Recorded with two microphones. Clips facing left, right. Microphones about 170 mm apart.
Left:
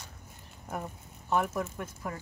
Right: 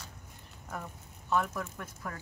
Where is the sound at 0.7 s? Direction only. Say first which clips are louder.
Left 4 dB; 20° left (ahead or behind).